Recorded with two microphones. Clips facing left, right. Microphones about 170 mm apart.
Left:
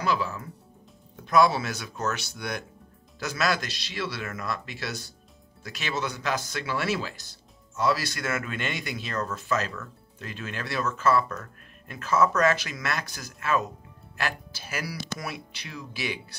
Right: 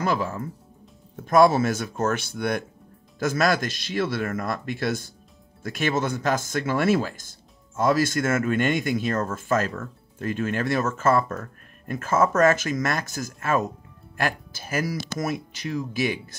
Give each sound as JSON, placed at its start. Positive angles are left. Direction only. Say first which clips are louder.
{"t": 0.0, "sound": "speech", "louder": "right 3 dB", "side_deg": -50}